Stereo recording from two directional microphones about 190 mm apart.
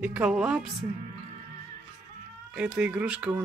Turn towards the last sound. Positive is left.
turn(degrees=-5)  # may be behind; listen again after turning